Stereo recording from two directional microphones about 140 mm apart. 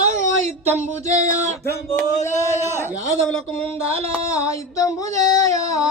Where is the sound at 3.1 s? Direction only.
50° right (ahead or behind).